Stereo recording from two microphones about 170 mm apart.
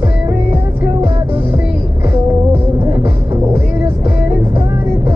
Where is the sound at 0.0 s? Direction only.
10° right (ahead or behind).